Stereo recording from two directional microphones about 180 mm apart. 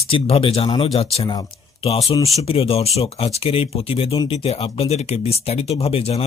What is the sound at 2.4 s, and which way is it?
Speech, 30° left (ahead or behind).